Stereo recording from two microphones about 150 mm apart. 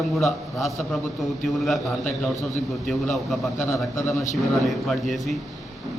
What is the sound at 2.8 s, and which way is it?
Speech, centre (ahead or behind).